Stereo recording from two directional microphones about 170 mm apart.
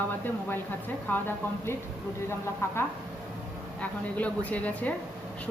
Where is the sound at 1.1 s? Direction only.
10° left (ahead or behind).